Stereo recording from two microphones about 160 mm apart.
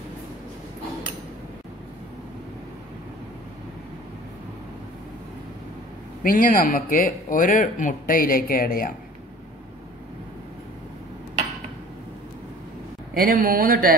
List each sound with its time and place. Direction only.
6.2 s speech: 60° left (ahead or behind)
13.1 s a man's voice: 65° right (ahead or behind)